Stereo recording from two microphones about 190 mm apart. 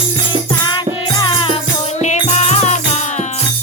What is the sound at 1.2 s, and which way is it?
Music, 25° left (ahead or behind).